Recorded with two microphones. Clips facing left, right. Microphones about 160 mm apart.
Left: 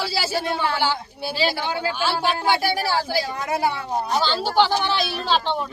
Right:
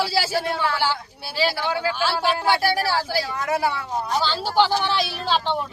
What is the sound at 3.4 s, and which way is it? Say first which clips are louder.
Speech: right 1 dB; 20° left (ahead or behind).